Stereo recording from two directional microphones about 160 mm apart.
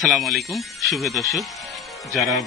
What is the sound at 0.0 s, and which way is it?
Speech, centre (ahead or behind).